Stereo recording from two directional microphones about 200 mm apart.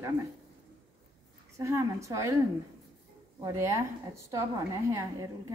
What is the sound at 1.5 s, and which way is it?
Speech, 15° right (ahead or behind).